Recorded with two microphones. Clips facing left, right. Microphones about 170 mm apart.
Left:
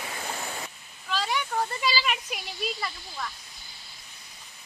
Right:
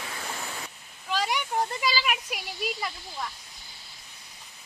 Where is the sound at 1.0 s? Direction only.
15° right (ahead or behind).